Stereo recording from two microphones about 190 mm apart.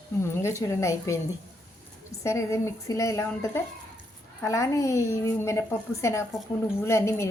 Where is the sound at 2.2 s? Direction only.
15° left (ahead or behind).